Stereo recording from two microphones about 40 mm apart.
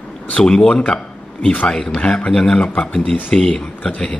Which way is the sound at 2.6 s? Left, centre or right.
Left.